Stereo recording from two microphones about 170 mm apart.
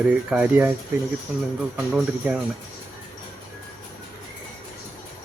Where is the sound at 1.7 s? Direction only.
5° right (ahead or behind).